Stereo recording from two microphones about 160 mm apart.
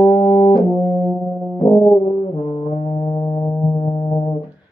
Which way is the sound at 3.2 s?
30° left (ahead or behind).